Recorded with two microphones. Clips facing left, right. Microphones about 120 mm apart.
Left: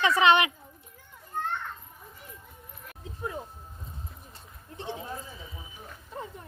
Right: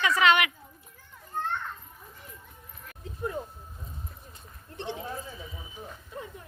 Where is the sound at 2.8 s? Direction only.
15° left (ahead or behind).